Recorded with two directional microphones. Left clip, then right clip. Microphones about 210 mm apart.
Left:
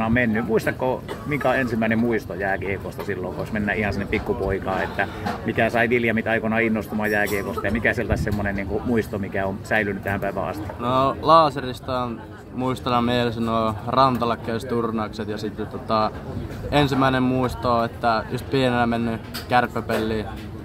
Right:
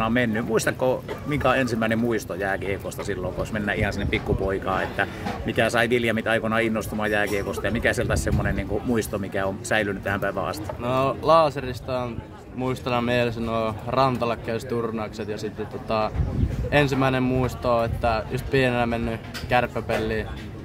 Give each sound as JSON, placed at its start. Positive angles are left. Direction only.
{"t": 0.0, "sound": "speech", "side_deg": -25}
{"t": 10.8, "sound": "speech", "side_deg": 0}